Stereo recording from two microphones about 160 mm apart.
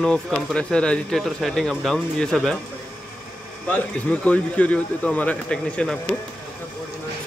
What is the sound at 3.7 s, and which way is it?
Speech, 10° left (ahead or behind).